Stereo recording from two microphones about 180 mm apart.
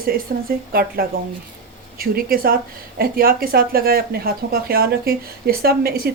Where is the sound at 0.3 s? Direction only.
55° right (ahead or behind).